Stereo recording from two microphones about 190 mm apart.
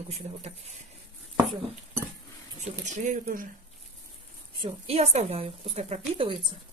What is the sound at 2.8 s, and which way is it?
Speech, 40° right (ahead or behind).